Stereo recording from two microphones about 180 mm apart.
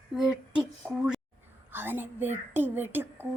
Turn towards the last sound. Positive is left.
turn(degrees=-10)  # may be behind; listen again after turning